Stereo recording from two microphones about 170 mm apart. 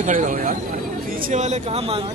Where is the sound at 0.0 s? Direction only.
50° right (ahead or behind).